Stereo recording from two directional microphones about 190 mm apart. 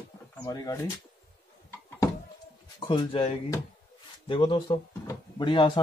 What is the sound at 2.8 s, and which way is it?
Speech, 25° left (ahead or behind).